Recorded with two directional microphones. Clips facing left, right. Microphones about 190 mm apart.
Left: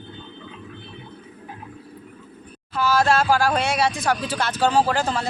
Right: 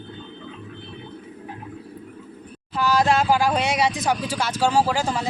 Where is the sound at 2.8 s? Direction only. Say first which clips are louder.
Even; 15° right (ahead or behind).